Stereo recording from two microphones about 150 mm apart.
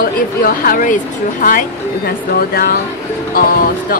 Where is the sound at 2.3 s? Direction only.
90° left.